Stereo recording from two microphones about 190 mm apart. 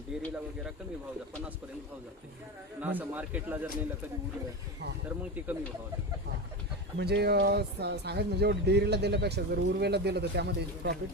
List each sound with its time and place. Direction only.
0.1 s a sound: 5° right (ahead or behind)
2.8 s a man's voice: 10° right (ahead or behind)
5.0 s a man's voice: 10° right (ahead or behind)
7.0 s speech: 60° right (ahead or behind)